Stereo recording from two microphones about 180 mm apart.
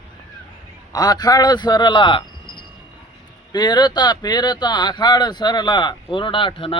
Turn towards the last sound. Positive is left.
turn(degrees=30)  # may be behind; listen again after turning